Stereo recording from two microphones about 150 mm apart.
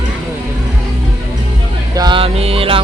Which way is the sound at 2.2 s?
40° right (ahead or behind).